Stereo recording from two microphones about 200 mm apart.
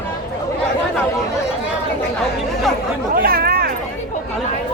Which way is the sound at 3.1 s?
45° right (ahead or behind).